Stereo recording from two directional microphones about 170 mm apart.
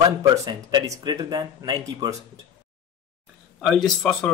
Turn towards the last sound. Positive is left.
turn(degrees=5)  # may be behind; listen again after turning